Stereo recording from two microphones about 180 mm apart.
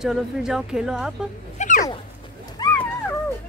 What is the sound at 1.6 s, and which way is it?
Dog, 40° left (ahead or behind).